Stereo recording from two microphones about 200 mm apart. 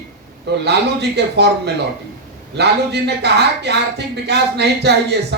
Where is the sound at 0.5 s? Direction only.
55° right (ahead or behind).